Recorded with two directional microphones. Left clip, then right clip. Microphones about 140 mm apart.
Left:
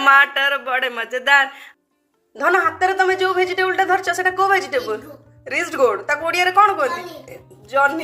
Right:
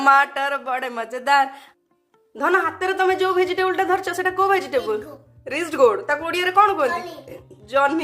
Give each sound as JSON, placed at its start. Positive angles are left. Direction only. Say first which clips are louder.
{"t": 0.0, "sound": "a woman's voice", "louder": "left 3 dB", "side_deg": -40}
{"t": 2.3, "sound": "a woman's voice", "louder": "left 3 dB", "side_deg": -20}